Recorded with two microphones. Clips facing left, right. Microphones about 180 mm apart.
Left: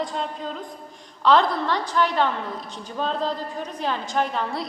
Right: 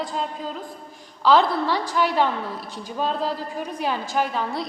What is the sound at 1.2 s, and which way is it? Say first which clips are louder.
A woman's voice: right 1 dB; 5° right (ahead or behind).